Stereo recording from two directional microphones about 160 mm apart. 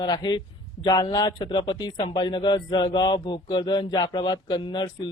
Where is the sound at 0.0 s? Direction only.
25° left (ahead or behind).